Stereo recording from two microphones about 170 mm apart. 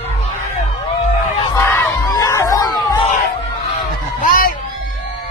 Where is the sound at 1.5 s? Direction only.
15° left (ahead or behind).